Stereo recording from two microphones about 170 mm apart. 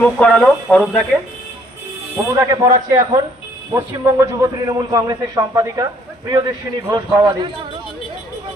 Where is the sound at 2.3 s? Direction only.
20° right (ahead or behind).